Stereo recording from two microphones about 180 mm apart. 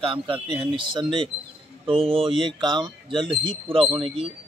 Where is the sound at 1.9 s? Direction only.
30° right (ahead or behind).